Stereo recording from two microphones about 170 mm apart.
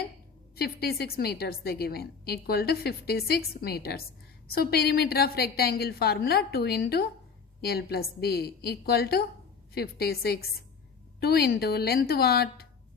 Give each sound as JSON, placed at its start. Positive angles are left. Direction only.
{"t": 0.5, "sound": "a woman's voice", "side_deg": 65}